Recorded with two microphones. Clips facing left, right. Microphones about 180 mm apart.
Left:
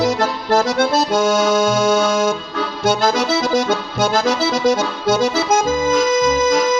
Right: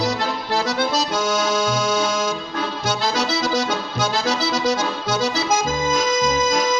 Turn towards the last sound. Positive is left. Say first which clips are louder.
# left 4 dB
turn(degrees=55)  # may be behind; listen again after turning